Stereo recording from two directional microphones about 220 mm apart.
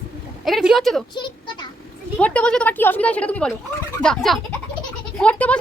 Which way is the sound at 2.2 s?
5° left (ahead or behind).